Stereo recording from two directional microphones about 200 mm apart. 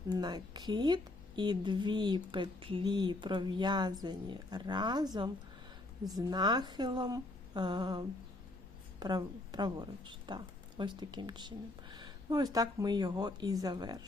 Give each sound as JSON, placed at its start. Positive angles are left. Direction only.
{"t": 0.1, "sound": "a woman's voice", "side_deg": -20}